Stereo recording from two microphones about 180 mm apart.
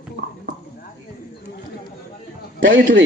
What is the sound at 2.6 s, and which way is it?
Speech, 90° right.